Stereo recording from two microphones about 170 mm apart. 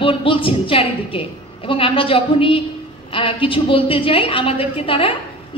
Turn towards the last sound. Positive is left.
turn(degrees=30)  # may be behind; listen again after turning